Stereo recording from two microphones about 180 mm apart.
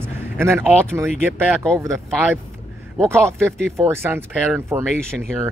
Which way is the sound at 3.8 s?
15° right (ahead or behind).